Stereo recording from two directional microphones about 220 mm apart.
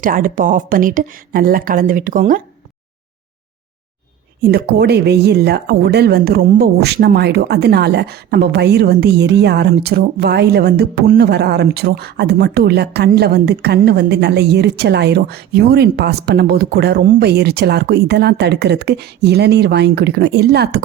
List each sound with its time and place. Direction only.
0.0 s speech: 40° right (ahead or behind)
4.4 s speech: 45° right (ahead or behind)